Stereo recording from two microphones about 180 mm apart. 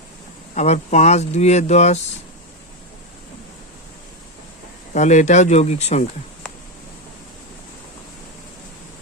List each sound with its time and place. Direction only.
0.5 s speech: 40° left (ahead or behind)
4.9 s speech: 40° left (ahead or behind)